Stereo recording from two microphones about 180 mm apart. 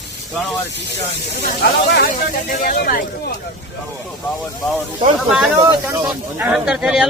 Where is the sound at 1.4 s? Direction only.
60° left (ahead or behind).